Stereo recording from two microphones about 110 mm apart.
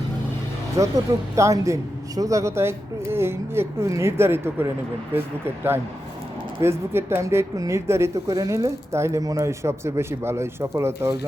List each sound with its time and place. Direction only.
0.8 s speech: 30° right (ahead or behind)
6.6 s speech: 20° right (ahead or behind)